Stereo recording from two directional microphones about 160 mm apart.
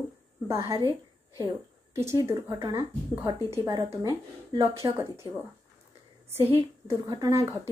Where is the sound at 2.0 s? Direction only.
15° right (ahead or behind).